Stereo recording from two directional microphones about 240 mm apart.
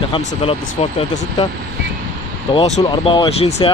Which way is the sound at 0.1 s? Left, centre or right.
Left.